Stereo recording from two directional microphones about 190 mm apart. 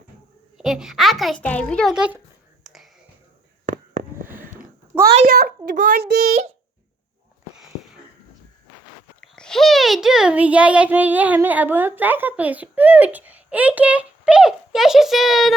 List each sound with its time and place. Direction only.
0.5 s a child's voice: centre (ahead or behind)
2.6 s a sound: centre (ahead or behind)
5.2 s a child's voice: 50° right (ahead or behind)
9.2 s a child's voice: 5° left (ahead or behind)